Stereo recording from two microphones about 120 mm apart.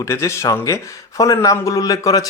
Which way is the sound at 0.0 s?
25° left (ahead or behind).